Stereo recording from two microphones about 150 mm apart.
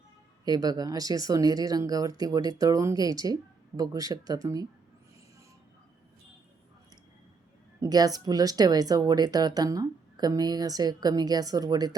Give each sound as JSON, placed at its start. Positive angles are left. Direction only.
{"t": 0.4, "sound": "speech", "side_deg": -25}
{"t": 7.8, "sound": "speech", "side_deg": -25}